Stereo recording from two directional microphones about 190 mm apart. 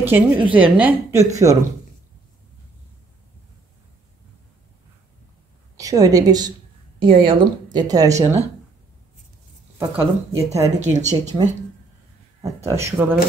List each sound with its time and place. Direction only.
0.0 s a woman's voice: 10° right (ahead or behind)
5.8 s speech: 20° right (ahead or behind)
9.8 s a woman's voice: 10° right (ahead or behind)
10.8 s speech: 40° right (ahead or behind)
12.4 s a woman's voice: 15° right (ahead or behind)